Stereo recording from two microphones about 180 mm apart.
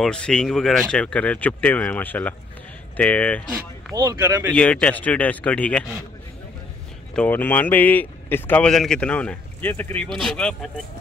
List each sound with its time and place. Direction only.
0.0 s speech: 5° left (ahead or behind)
3.9 s speech: 20° right (ahead or behind)
4.6 s speech: 5° left (ahead or behind)
7.2 s speech: 10° left (ahead or behind)